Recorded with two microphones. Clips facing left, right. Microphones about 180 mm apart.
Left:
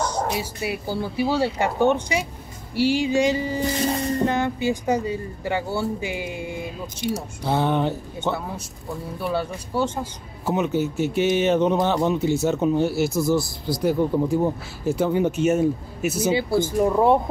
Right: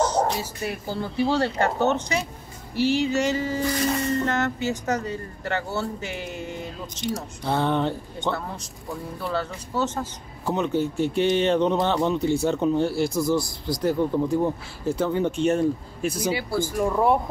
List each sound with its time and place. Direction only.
0.3 s speech: 10° left (ahead or behind); by 4.1 s 30° left (ahead or behind)
4.2 s speech: 10° left (ahead or behind)
16.3 s speech: 25° left (ahead or behind)